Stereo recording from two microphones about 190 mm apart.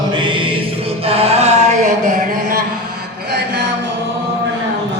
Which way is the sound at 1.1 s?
30° right (ahead or behind).